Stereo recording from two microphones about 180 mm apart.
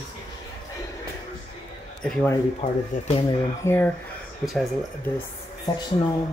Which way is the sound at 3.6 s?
15° left (ahead or behind).